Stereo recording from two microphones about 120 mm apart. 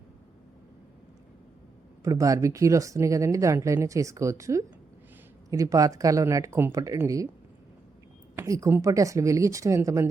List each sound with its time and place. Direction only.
2.0 s speech: 30° right (ahead or behind)
8.4 s speech: 25° right (ahead or behind)